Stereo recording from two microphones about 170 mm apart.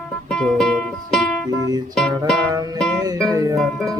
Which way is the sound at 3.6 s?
Centre (ahead or behind).